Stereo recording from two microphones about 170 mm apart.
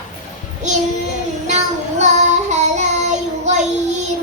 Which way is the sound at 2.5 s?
45° right (ahead or behind).